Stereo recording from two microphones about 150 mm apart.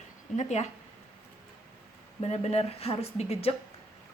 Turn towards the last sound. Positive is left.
turn(degrees=40)  # may be behind; listen again after turning